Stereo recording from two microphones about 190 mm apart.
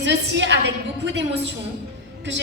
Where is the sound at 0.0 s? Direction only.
70° right (ahead or behind).